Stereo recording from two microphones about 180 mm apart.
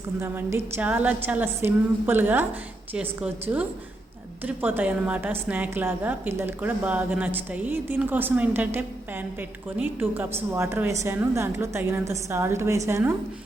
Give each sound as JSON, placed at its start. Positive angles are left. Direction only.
{"t": 0.2, "sound": "a woman's voice", "side_deg": -10}